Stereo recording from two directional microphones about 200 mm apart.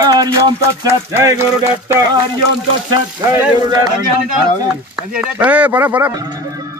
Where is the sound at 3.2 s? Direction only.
15° right (ahead or behind).